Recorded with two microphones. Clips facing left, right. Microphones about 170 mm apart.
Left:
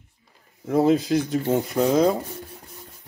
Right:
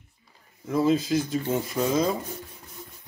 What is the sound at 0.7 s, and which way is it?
Speech, 60° left (ahead or behind).